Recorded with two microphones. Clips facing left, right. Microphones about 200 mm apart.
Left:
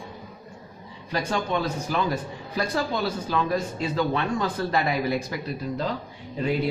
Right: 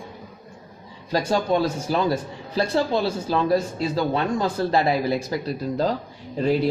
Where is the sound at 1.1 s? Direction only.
35° right (ahead or behind).